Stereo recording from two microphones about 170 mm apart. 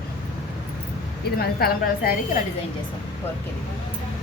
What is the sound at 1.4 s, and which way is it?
A woman's voice, 60° left (ahead or behind).